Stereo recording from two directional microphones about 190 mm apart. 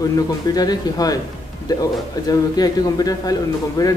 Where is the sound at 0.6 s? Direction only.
20° left (ahead or behind).